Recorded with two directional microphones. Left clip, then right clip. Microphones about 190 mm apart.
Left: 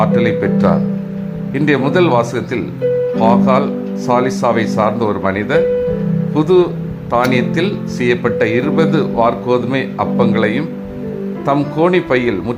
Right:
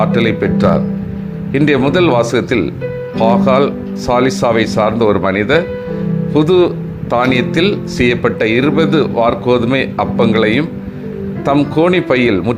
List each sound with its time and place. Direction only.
0.0 s speech: 15° right (ahead or behind)
11.8 s speech: 20° right (ahead or behind)